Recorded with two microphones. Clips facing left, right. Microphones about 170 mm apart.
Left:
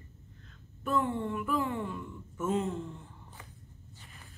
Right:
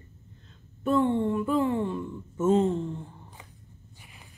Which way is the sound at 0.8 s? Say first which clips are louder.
Right 7 dB; 30° right (ahead or behind).